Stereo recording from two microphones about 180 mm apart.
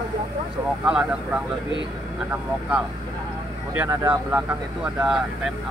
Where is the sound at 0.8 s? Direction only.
5° right (ahead or behind).